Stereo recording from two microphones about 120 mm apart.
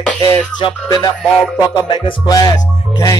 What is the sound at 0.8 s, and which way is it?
Music, 30° left (ahead or behind).